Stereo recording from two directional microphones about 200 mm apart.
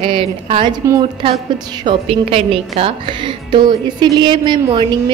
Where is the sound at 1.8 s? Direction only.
25° right (ahead or behind).